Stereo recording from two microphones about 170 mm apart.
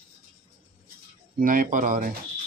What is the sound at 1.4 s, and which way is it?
Speech, 55° right (ahead or behind).